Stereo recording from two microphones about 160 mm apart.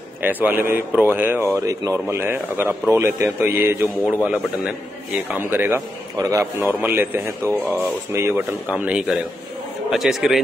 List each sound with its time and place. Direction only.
0.2 s a man's voice: 10° right (ahead or behind)